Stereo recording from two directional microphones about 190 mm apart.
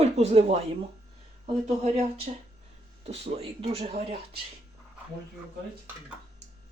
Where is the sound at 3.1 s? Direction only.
30° right (ahead or behind).